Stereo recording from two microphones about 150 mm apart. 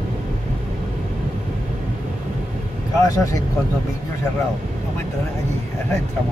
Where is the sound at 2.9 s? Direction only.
20° left (ahead or behind).